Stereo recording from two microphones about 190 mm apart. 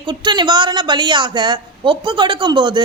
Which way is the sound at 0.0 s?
25° right (ahead or behind).